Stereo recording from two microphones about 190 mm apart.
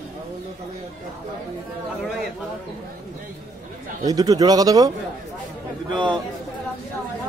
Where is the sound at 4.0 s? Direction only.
20° right (ahead or behind).